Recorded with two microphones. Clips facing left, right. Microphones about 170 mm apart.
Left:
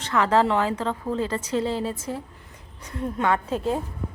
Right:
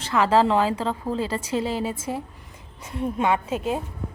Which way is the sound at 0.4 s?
10° right (ahead or behind).